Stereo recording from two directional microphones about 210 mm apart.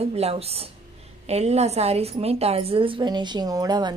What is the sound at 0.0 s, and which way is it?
A woman's voice, 30° right (ahead or behind).